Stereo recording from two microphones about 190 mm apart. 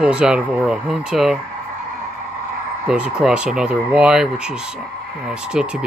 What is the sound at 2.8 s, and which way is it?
Speech, 5° right (ahead or behind).